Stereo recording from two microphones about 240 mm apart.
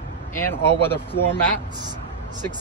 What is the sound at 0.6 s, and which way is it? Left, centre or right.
Speech, left.